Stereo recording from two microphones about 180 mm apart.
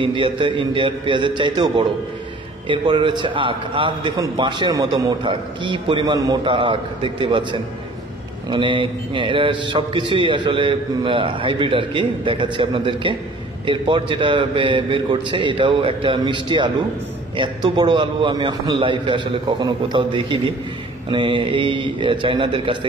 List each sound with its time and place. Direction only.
0.0 s a man's voice: 30° right (ahead or behind)